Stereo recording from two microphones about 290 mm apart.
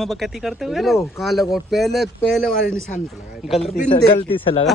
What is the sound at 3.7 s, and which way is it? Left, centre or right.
Speech, left.